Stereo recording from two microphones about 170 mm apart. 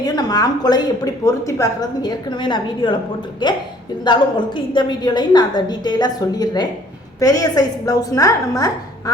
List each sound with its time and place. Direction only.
0.0 s a woman's voice: 25° left (ahead or behind)